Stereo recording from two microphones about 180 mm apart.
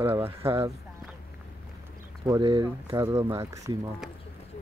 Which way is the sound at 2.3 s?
20° right (ahead or behind).